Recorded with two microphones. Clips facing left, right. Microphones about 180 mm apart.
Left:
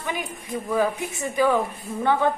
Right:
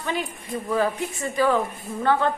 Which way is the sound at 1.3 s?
15° left (ahead or behind).